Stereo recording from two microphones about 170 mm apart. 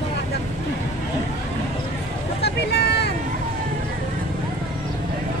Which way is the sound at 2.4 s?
75° left (ahead or behind).